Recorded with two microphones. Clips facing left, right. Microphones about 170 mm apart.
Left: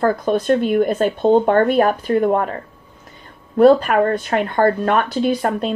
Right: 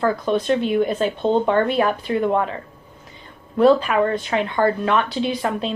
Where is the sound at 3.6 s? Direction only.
50° left (ahead or behind).